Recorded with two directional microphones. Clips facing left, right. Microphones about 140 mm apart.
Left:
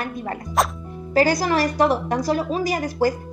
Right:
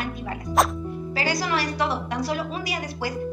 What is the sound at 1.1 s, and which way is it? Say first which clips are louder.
A woman's voice: left 8 dB; 45° left (ahead or behind).